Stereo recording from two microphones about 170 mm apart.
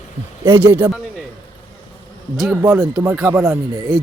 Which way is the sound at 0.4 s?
20° right (ahead or behind).